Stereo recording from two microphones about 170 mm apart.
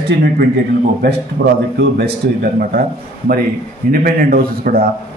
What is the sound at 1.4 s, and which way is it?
Speech, 75° right (ahead or behind).